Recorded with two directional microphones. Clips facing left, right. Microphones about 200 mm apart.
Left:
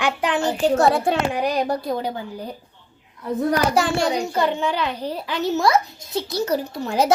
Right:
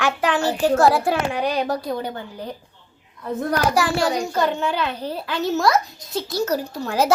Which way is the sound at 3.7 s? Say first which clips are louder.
Even; 25° left (ahead or behind).